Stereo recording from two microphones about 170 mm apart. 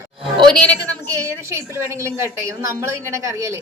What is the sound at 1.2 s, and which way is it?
A woman's voice, 15° right (ahead or behind).